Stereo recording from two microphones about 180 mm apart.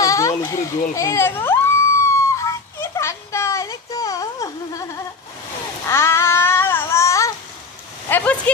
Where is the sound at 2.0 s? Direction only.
15° left (ahead or behind).